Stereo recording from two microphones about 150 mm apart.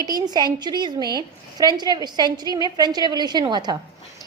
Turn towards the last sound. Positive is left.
turn(degrees=-30)  # may be behind; listen again after turning